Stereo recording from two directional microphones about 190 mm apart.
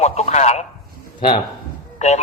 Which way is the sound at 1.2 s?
25° left (ahead or behind).